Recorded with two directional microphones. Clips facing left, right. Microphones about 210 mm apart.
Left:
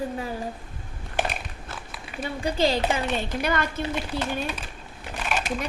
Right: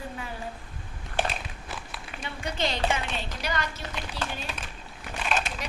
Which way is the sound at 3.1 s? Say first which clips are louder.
Left 6 dB; 55° left (ahead or behind).